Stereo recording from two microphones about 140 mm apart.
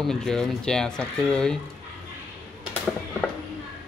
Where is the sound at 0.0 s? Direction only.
5° left (ahead or behind).